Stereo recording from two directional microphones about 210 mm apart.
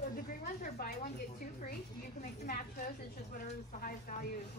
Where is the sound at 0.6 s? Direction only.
40° left (ahead or behind).